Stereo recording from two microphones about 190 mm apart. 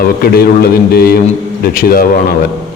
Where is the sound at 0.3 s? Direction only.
55° left (ahead or behind).